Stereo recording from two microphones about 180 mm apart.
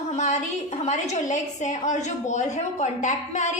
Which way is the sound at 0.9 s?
40° left (ahead or behind).